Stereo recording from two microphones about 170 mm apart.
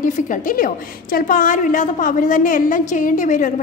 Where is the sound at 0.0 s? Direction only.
50° left (ahead or behind).